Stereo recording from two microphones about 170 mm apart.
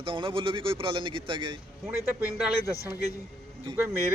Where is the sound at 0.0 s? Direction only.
30° right (ahead or behind).